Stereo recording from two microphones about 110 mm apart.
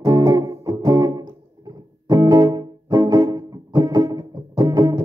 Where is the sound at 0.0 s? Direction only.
35° right (ahead or behind).